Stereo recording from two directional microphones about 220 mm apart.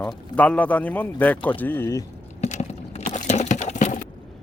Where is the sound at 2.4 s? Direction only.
30° left (ahead or behind).